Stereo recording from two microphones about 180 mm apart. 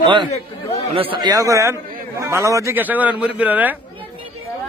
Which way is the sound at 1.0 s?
25° right (ahead or behind).